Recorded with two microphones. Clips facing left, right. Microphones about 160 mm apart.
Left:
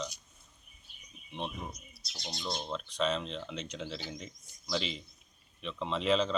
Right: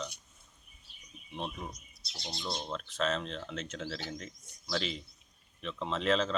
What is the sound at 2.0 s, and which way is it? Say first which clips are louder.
Speech: right 1 dB; 30° right (ahead or behind).